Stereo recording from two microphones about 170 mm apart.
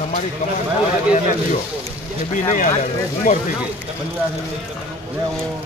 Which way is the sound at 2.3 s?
50° left (ahead or behind).